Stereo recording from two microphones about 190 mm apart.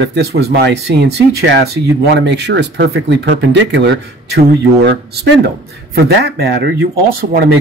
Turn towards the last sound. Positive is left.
turn(degrees=-55)  # may be behind; listen again after turning